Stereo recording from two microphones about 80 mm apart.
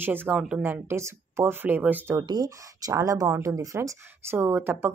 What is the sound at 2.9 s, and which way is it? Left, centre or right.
Speech, right.